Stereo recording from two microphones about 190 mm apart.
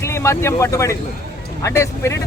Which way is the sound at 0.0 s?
15° left (ahead or behind).